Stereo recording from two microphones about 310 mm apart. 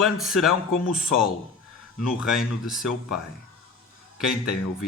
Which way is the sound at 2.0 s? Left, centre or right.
Centre.